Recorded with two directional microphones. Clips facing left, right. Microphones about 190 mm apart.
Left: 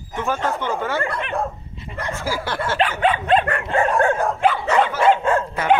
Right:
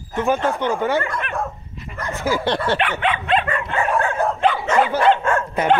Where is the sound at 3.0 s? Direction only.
40° left (ahead or behind).